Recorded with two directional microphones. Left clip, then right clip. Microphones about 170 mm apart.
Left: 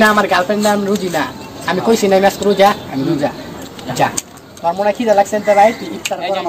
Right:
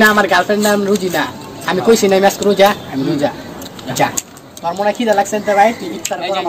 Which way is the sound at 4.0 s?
15° left (ahead or behind).